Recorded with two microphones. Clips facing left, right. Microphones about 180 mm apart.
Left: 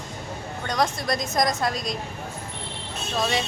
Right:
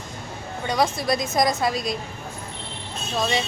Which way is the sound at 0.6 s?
5° right (ahead or behind).